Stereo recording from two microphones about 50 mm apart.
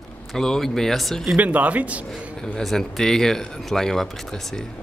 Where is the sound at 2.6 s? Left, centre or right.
Centre.